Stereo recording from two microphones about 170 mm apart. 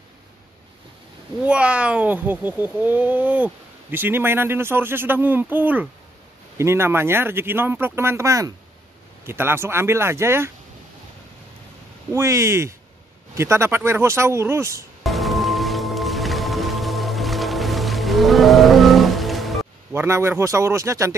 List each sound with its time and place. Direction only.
1.4 s speech: 5° right (ahead or behind)
12.1 s speech: 15° right (ahead or behind)
15.0 s music: centre (ahead or behind)
19.9 s speech: 15° right (ahead or behind)